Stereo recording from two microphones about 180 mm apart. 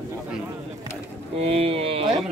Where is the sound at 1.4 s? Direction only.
35° right (ahead or behind).